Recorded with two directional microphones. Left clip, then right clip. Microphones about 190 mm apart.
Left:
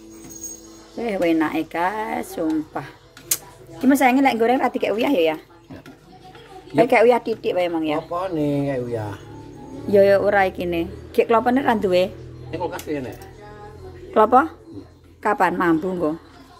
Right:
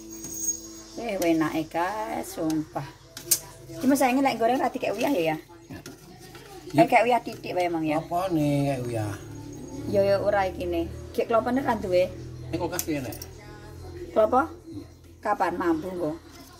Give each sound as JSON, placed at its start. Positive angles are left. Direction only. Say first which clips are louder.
{"t": 1.0, "sound": "speech", "louder": "left 5 dB", "side_deg": 20}
{"t": 3.9, "sound": "speech", "louder": "left 6 dB", "side_deg": 30}
{"t": 6.7, "sound": "a woman's voice", "louder": "left 5 dB", "side_deg": 30}
{"t": 14.1, "sound": "a woman's voice", "louder": "left 7 dB", "side_deg": 35}